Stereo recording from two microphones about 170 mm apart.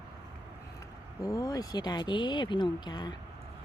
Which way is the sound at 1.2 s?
20° left (ahead or behind).